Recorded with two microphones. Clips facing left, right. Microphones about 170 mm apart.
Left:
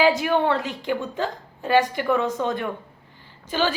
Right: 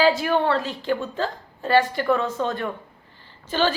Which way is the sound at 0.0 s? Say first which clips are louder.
Even; 15° left (ahead or behind).